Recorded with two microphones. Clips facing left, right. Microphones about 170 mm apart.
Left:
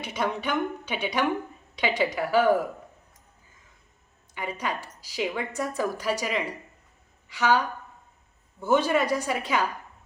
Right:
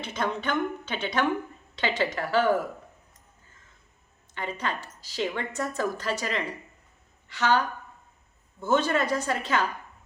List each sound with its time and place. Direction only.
0.0 s a woman's voice: 10° left (ahead or behind)
4.4 s a woman's voice: 10° left (ahead or behind)